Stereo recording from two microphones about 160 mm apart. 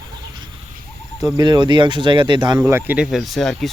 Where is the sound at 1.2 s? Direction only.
25° right (ahead or behind).